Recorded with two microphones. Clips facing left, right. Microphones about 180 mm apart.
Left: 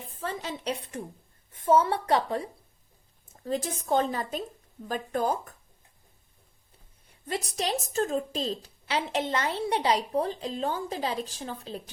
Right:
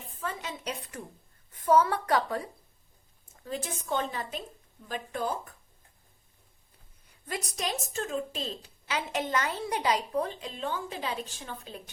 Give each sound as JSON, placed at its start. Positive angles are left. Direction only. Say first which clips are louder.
{"t": 0.2, "sound": "a woman's voice", "louder": "left 3 dB", "side_deg": 35}
{"t": 3.4, "sound": "a woman's voice", "louder": "left 5 dB", "side_deg": 35}
{"t": 7.3, "sound": "a woman's voice", "louder": "left 4 dB", "side_deg": 30}